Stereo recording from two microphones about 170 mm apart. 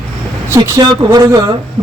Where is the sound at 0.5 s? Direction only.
25° right (ahead or behind).